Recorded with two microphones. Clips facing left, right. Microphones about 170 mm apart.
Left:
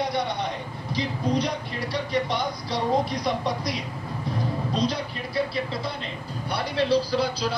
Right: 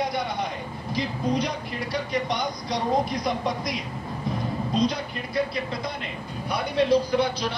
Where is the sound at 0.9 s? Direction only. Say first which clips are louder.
Even; centre (ahead or behind).